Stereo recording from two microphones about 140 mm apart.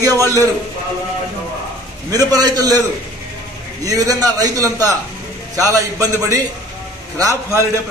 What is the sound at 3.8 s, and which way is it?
A man's voice, 25° right (ahead or behind).